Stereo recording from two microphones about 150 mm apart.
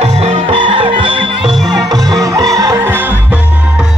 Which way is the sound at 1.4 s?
Centre (ahead or behind).